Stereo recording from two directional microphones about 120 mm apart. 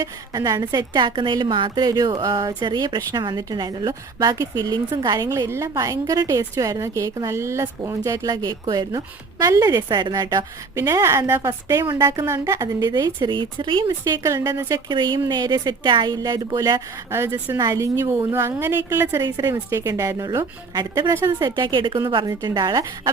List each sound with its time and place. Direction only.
0.0 s a woman's voice: 30° right (ahead or behind)
5.3 s a woman's voice: 20° right (ahead or behind); by 13.9 s 40° right (ahead or behind)
14.0 s a woman's voice: 25° right (ahead or behind)
14.8 s a woman's voice: 40° right (ahead or behind); by 19.2 s 20° right (ahead or behind)
19.2 s a woman's voice: 30° right (ahead or behind)
21.3 s a woman's voice: 40° right (ahead or behind)